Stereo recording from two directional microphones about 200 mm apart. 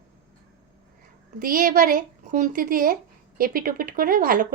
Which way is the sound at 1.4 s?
45° right (ahead or behind).